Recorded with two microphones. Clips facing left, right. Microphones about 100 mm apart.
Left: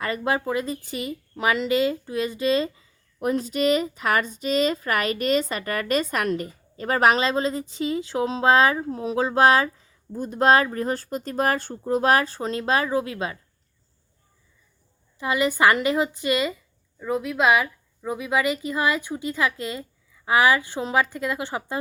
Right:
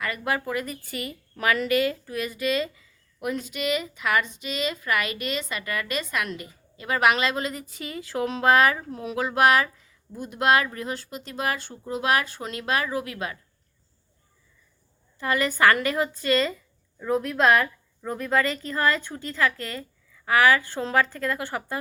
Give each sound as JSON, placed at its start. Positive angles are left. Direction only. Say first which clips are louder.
{"t": 0.0, "sound": "speech", "louder": "left 3 dB", "side_deg": 25}
{"t": 15.2, "sound": "speech", "louder": "left 1 dB", "side_deg": 15}
{"t": 17.0, "sound": "speech", "louder": "even", "side_deg": 5}